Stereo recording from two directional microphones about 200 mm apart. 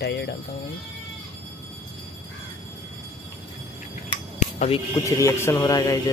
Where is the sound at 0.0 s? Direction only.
55° left (ahead or behind).